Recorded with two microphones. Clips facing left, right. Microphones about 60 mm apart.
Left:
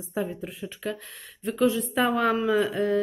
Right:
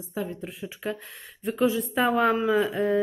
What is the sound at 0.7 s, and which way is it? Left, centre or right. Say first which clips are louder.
Speech: right 1 dB; centre.